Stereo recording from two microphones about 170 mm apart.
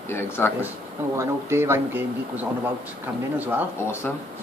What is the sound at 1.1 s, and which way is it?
Speech, 15° right (ahead or behind).